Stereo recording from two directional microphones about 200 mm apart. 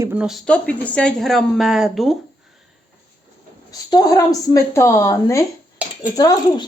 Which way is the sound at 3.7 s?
20° left (ahead or behind).